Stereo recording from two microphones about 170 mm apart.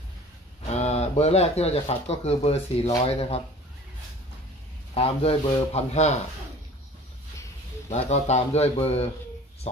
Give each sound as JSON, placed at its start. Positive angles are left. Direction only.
{"t": 0.7, "sound": "speech", "side_deg": 40}
{"t": 4.9, "sound": "speech", "side_deg": 35}
{"t": 7.9, "sound": "speech", "side_deg": 40}